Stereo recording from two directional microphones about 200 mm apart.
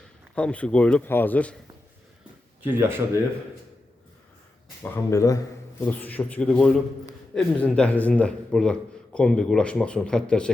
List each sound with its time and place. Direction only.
0.3 s a man's voice: 5° left (ahead or behind)
2.6 s speech: 10° right (ahead or behind)
4.8 s a man's voice: 15° left (ahead or behind)